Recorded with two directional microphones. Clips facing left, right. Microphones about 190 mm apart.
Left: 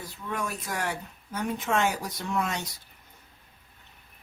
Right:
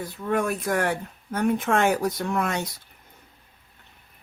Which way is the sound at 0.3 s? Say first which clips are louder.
Right 9 dB; 55° right (ahead or behind).